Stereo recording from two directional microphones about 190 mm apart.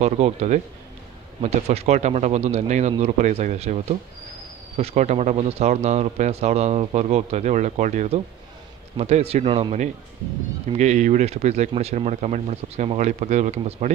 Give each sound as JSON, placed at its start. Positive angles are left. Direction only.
{"t": 0.0, "sound": "speech", "side_deg": -35}